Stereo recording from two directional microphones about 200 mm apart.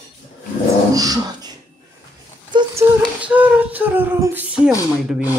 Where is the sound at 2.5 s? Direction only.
15° right (ahead or behind).